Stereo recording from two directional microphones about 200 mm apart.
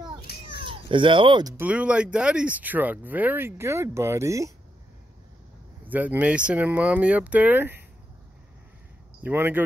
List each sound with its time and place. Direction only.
0.3 s children playing: 50° left (ahead or behind)
0.7 s speech: 25° right (ahead or behind)
1.6 s speech: 5° right (ahead or behind)
5.9 s speech: 10° right (ahead or behind)
9.2 s speech: 10° right (ahead or behind)